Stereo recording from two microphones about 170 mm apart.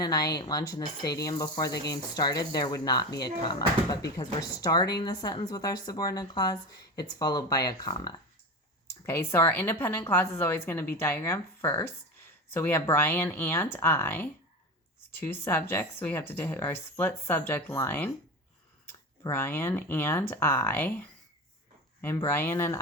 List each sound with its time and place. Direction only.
0.0 s a woman's voice: 20° left (ahead or behind)